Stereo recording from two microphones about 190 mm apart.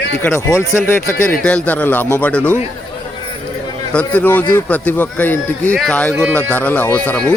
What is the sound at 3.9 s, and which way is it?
Speech, 5° left (ahead or behind).